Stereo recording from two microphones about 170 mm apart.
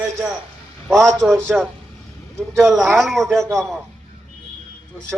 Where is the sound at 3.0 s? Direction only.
Centre (ahead or behind).